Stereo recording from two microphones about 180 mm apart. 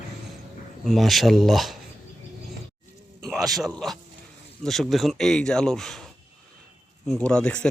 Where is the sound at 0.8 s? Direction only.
Centre (ahead or behind).